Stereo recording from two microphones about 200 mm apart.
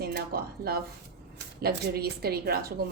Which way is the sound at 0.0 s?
50° right (ahead or behind).